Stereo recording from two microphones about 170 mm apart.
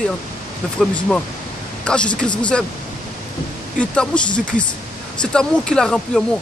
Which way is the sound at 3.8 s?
5° left (ahead or behind).